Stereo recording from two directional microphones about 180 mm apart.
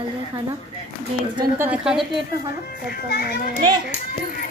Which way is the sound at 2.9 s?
60° left (ahead or behind).